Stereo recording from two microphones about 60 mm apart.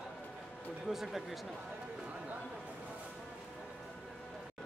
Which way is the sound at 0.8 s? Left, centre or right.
Centre.